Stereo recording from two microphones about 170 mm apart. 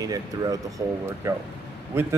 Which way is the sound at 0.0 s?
20° right (ahead or behind).